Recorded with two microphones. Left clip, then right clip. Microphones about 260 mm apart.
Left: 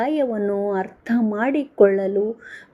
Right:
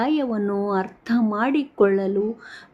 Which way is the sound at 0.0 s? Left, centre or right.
Centre.